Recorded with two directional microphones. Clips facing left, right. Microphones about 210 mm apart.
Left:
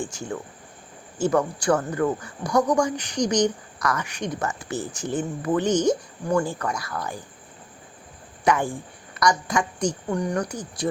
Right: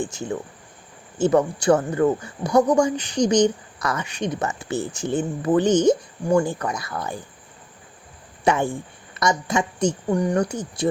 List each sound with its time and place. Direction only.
0.0 s speech: 20° right (ahead or behind)
8.4 s speech: 25° right (ahead or behind)